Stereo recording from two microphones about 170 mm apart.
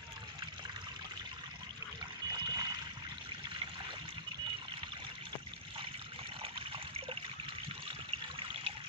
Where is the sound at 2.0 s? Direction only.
25° right (ahead or behind).